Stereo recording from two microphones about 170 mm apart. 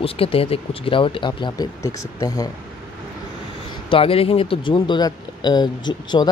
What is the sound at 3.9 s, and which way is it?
Speech, 35° left (ahead or behind).